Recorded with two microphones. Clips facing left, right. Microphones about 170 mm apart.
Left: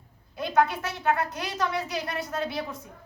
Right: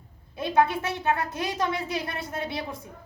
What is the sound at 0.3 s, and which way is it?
A woman's voice, 25° right (ahead or behind).